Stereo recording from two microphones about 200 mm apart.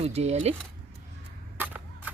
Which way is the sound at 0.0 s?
30° right (ahead or behind).